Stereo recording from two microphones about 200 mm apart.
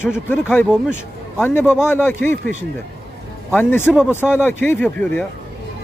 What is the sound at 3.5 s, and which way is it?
A man's voice, 10° left (ahead or behind).